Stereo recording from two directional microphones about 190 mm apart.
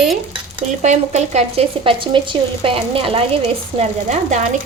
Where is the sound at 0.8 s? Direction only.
35° right (ahead or behind).